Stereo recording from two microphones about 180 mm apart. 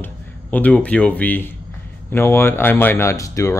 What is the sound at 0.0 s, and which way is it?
Speech, 10° left (ahead or behind).